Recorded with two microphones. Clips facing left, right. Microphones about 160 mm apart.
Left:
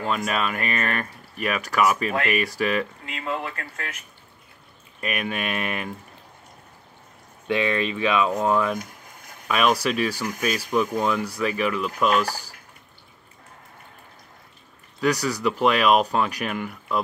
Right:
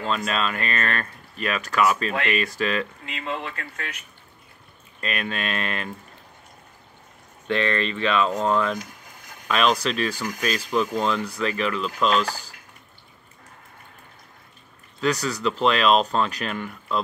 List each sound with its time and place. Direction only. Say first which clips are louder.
0.0 s speech: even; 15° left (ahead or behind)
3.1 s speech: left 1 dB; 40° left (ahead or behind)
5.0 s speech: left 1 dB; 15° left (ahead or behind)
7.4 s speech: left 1 dB; 10° left (ahead or behind)
15.0 s speech: left 1 dB; 10° left (ahead or behind)